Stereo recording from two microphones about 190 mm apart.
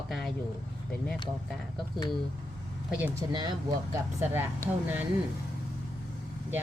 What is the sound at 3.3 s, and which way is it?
Speech, 20° right (ahead or behind).